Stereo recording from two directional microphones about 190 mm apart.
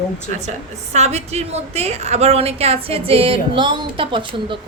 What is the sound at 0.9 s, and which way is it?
A woman's voice, 35° right (ahead or behind).